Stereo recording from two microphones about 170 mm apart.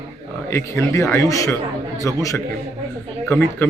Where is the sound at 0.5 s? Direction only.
15° left (ahead or behind).